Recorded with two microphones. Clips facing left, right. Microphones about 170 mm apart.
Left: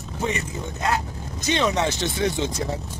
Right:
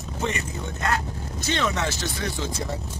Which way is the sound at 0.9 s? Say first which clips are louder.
Left 1 dB; 15° left (ahead or behind).